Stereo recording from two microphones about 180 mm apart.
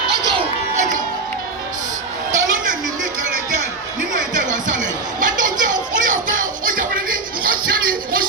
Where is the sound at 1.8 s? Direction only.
45° right (ahead or behind).